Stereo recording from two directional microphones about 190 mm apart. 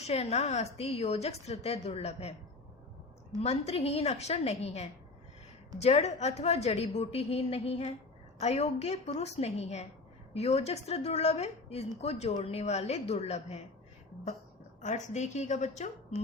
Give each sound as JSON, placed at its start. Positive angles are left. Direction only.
{"t": 0.0, "sound": "a woman's voice", "side_deg": 35}
{"t": 3.4, "sound": "a woman's voice", "side_deg": 35}
{"t": 14.8, "sound": "a woman's voice", "side_deg": 40}